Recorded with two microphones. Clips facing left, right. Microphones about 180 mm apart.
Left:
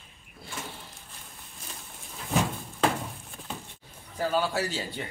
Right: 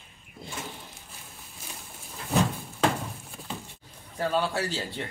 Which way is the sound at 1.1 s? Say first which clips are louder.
Right 1 dB; 5° right (ahead or behind).